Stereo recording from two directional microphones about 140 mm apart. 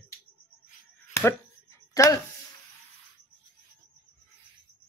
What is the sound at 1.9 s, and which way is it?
Speech, 25° left (ahead or behind).